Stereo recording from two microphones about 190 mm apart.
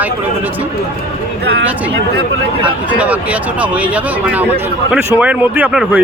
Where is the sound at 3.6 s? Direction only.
5° right (ahead or behind).